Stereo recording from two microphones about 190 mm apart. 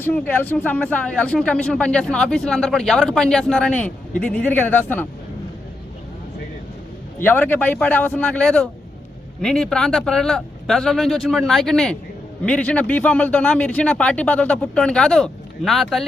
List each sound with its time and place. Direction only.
0.0 s speech: 10° left (ahead or behind)
7.2 s speech: 10° left (ahead or behind)